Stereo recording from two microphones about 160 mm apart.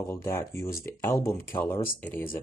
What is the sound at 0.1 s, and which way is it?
Speech, 15° left (ahead or behind).